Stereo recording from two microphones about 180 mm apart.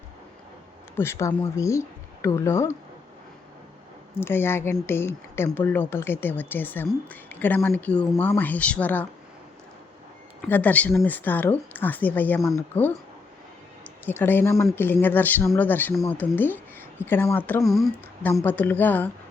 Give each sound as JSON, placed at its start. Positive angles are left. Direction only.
{"t": 0.9, "sound": "a woman's voice", "side_deg": 15}
{"t": 4.1, "sound": "a woman's voice", "side_deg": 10}
{"t": 10.5, "sound": "a woman's voice", "side_deg": 10}
{"t": 14.0, "sound": "a woman's voice", "side_deg": 10}